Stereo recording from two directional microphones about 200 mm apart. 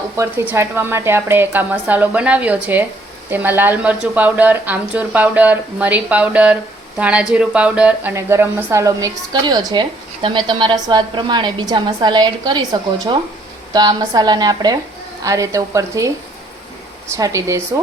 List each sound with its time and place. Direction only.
0.2 s a woman's voice: 15° right (ahead or behind)
13.7 s a woman's voice: 20° right (ahead or behind)